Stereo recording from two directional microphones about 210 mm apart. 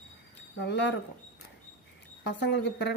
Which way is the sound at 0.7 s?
55° left (ahead or behind).